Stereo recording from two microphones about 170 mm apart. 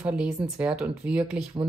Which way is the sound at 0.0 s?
10° right (ahead or behind).